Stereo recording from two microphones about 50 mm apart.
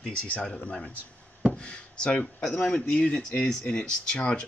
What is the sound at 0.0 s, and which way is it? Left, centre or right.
Speech, left.